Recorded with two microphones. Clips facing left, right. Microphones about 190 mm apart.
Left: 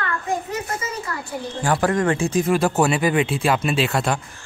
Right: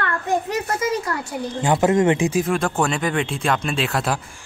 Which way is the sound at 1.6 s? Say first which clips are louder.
Right 3 dB; 20° right (ahead or behind).